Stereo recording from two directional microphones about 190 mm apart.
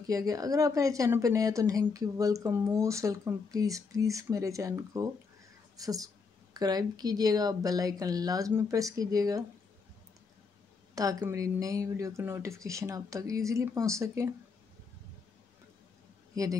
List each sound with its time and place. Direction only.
0.0 s speech: 20° right (ahead or behind)
11.0 s speech: 20° right (ahead or behind)